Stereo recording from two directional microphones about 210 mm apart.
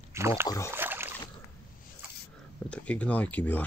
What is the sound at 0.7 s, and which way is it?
Boat, 10° right (ahead or behind).